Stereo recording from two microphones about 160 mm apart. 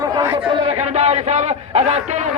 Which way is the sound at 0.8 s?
45° right (ahead or behind).